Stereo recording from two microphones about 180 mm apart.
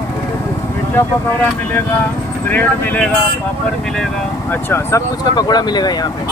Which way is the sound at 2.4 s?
10° left (ahead or behind).